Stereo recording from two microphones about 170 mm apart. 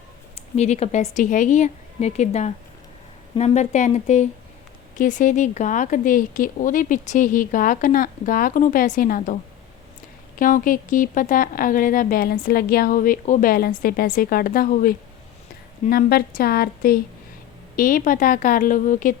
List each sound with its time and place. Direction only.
0.3 s speech: 40° left (ahead or behind)